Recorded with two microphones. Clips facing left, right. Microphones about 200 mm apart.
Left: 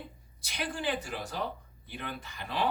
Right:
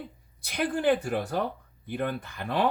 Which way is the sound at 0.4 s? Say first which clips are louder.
Right 9 dB; 55° right (ahead or behind).